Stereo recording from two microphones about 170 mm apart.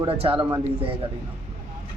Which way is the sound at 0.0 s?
35° right (ahead or behind).